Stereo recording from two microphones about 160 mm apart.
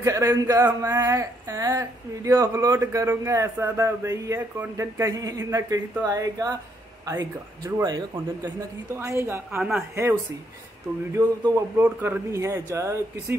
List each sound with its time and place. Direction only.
0.0 s speech: 20° right (ahead or behind)
11.1 s speech: 20° right (ahead or behind)